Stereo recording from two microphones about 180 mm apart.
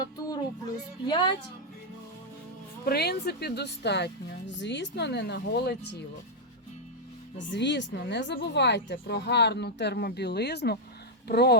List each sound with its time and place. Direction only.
1.0 s a woman's voice: 25° left (ahead or behind)
2.8 s speech: 60° left (ahead or behind)
7.3 s speech: 80° left; by 11.6 s 65° left (ahead or behind)